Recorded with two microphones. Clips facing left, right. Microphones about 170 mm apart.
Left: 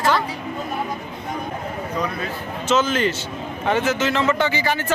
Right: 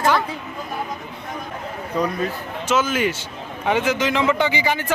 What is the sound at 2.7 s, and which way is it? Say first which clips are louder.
Speech: left 1 dB; 10° right (ahead or behind).